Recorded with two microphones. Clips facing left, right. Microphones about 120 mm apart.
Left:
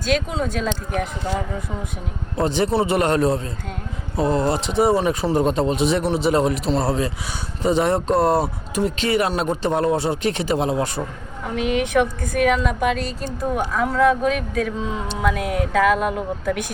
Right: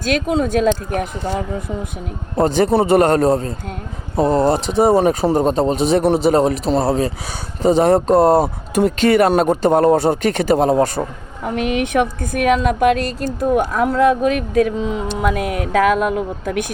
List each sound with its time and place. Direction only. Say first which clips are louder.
0.0 s a woman's voice: right 4 dB; 65° right (ahead or behind)
2.3 s speech: right 5 dB; 45° right (ahead or behind)
11.5 s a woman's voice: right 2 dB; 60° right (ahead or behind)